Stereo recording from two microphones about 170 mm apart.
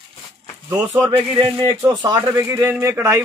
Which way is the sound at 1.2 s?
30° right (ahead or behind).